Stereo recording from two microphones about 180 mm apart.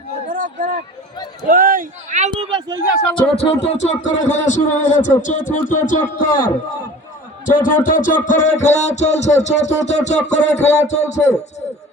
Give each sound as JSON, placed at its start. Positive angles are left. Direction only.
{"t": 0.3, "sound": "a sound", "side_deg": -50}
{"t": 1.5, "sound": "speech", "side_deg": -50}
{"t": 2.3, "sound": "speech", "side_deg": -25}
{"t": 3.2, "sound": "speech", "side_deg": 30}
{"t": 7.4, "sound": "music", "side_deg": 45}